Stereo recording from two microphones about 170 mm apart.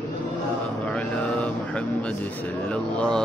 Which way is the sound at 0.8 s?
5° left (ahead or behind).